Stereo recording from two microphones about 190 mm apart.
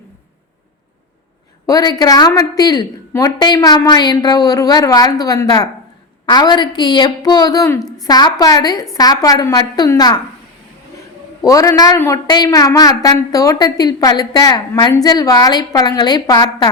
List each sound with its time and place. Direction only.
1.6 s a woman's voice: 20° left (ahead or behind)
11.4 s a woman's voice: 15° left (ahead or behind)